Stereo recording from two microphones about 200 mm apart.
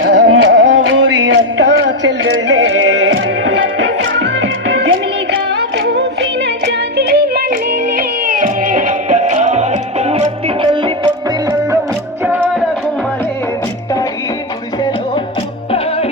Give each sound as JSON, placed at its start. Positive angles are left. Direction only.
{"t": 0.0, "sound": "music", "side_deg": -60}
{"t": 5.7, "sound": "music", "side_deg": -60}
{"t": 12.2, "sound": "music", "side_deg": -10}